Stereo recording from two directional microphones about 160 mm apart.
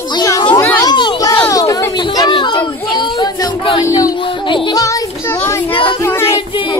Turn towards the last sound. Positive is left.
turn(degrees=15)  # may be behind; listen again after turning